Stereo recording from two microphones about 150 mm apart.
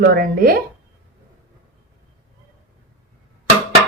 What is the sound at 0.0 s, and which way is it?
Speech, 85° right.